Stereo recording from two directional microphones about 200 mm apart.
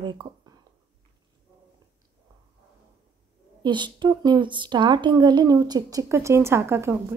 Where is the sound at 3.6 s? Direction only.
20° right (ahead or behind).